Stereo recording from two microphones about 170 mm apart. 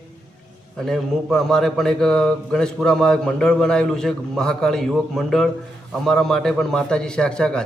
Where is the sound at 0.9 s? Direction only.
5° left (ahead or behind).